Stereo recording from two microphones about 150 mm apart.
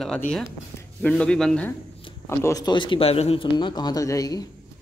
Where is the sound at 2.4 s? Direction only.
25° left (ahead or behind).